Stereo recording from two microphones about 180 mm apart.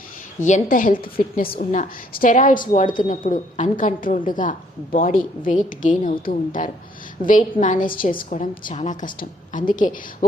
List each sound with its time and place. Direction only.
0.4 s a woman's voice: 45° left (ahead or behind)